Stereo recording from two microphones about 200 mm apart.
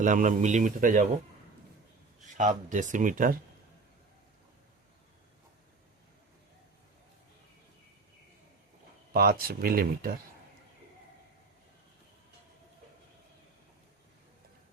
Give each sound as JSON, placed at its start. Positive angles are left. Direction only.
{"t": 0.0, "sound": "speech", "side_deg": -40}
{"t": 2.2, "sound": "speech", "side_deg": -35}
{"t": 9.1, "sound": "speech", "side_deg": -50}